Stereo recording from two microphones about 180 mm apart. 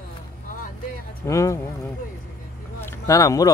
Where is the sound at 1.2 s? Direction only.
15° left (ahead or behind).